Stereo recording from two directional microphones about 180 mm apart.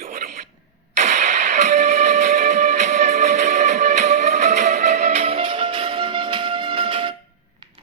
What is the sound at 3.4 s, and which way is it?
Music, 45° right (ahead or behind).